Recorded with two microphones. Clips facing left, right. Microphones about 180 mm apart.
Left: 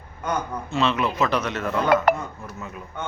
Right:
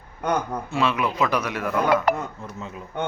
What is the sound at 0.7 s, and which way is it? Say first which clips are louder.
Speech: left 1 dB; 10° right (ahead or behind).